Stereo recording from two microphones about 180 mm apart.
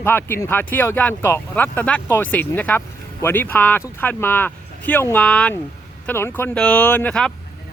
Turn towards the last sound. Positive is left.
turn(degrees=5)  # may be behind; listen again after turning